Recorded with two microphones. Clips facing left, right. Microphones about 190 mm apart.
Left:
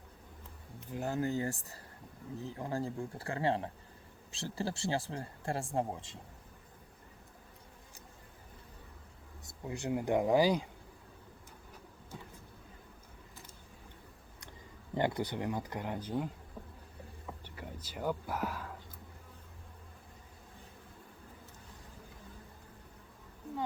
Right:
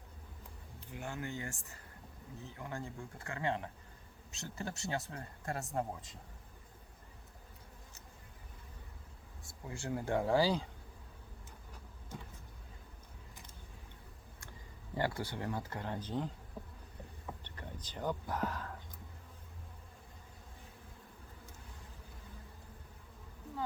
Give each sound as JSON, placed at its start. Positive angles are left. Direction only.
{"t": 0.9, "sound": "speech", "side_deg": 35}
{"t": 9.5, "sound": "speech", "side_deg": 20}
{"t": 14.9, "sound": "speech", "side_deg": 20}
{"t": 16.6, "sound": "insect", "side_deg": -15}
{"t": 17.4, "sound": "speech", "side_deg": 10}